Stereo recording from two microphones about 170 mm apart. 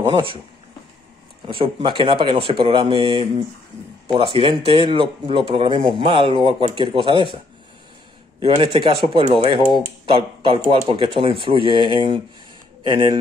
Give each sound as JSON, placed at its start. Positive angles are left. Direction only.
{"t": 0.0, "sound": "speech", "side_deg": -30}
{"t": 1.5, "sound": "speech", "side_deg": -30}
{"t": 8.4, "sound": "speech", "side_deg": -30}